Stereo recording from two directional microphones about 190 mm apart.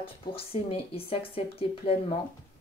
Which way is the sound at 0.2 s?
30° left (ahead or behind).